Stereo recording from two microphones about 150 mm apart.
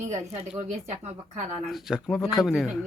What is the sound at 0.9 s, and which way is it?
Speech, 45° right (ahead or behind).